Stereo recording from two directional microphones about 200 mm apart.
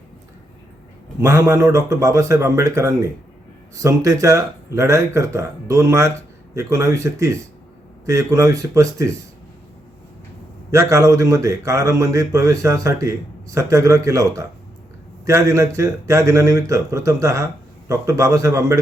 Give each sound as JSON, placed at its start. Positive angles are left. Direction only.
{"t": 1.2, "sound": "a man's voice", "side_deg": -15}
{"t": 10.7, "sound": "a man's voice", "side_deg": -15}